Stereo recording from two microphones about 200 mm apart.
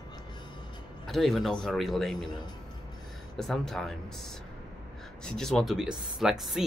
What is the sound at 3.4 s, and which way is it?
Speech, centre (ahead or behind).